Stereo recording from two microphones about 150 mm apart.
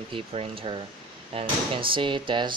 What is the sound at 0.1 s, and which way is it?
Speech, 40° right (ahead or behind).